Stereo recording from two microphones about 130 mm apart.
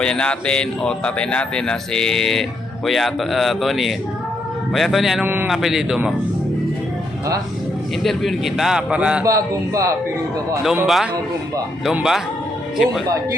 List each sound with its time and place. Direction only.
0.0 s speech: 5° left (ahead or behind)
5.2 s a man's voice: 15° right (ahead or behind)
5.5 s speech: 5° right (ahead or behind)
8.0 s speech: centre (ahead or behind)
9.2 s speech: 25° right (ahead or behind)
10.8 s a man's voice: centre (ahead or behind)